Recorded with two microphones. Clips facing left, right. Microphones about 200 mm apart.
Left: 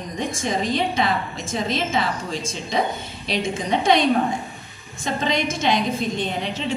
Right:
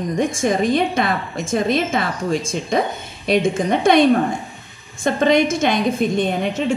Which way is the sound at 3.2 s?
55° right (ahead or behind).